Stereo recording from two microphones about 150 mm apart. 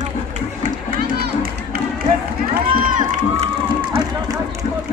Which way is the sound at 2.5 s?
60° right (ahead or behind).